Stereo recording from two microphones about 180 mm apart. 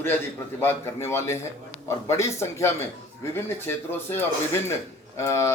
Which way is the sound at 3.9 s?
10° left (ahead or behind).